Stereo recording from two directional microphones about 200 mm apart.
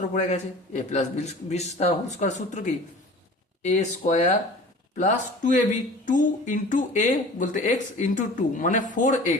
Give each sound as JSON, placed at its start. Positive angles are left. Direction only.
{"t": 0.1, "sound": "speech", "side_deg": 35}